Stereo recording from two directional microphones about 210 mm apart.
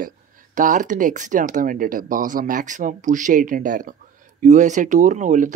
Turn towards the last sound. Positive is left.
turn(degrees=-35)  # may be behind; listen again after turning